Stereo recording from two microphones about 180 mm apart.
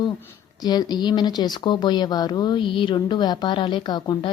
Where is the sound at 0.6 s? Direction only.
20° left (ahead or behind).